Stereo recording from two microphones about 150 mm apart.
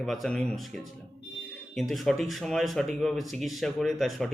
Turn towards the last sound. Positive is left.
turn(degrees=0)  # may be behind; listen again after turning